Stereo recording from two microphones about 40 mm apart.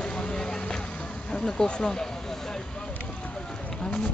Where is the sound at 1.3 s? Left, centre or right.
Left.